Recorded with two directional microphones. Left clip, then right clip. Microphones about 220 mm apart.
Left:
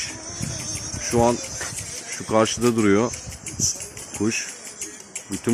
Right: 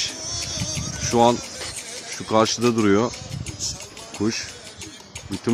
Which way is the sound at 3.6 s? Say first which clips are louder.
Left 5 dB; 45° right (ahead or behind).